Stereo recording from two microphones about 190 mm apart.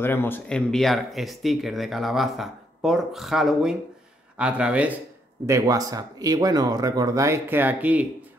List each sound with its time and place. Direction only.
0.0 s speech: 10° left (ahead or behind); by 5.0 s 5° right (ahead or behind)
5.5 s speech: 20° right (ahead or behind)